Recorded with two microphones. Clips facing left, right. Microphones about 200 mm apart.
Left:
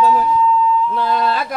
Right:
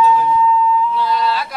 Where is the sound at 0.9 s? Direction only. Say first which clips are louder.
Even; 50° left (ahead or behind).